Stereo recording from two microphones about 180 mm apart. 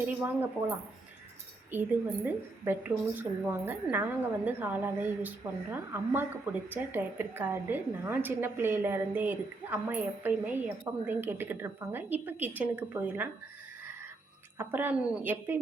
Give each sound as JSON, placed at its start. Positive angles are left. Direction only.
{"t": 0.0, "sound": "a woman's voice", "side_deg": -10}
{"t": 14.6, "sound": "a woman's voice", "side_deg": -10}